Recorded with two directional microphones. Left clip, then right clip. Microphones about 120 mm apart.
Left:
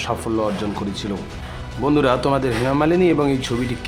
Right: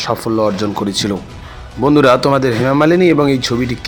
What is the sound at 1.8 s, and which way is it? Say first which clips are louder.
Speech: right 7 dB; 40° right (ahead or behind).